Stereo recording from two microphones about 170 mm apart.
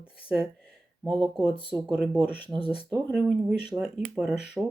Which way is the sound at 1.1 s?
25° right (ahead or behind).